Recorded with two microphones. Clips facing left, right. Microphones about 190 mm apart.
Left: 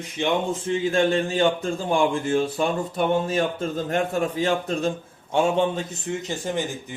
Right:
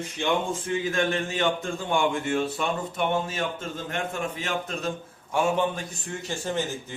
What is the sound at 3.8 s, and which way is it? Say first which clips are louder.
A man's voice: left 6 dB; 35° left (ahead or behind).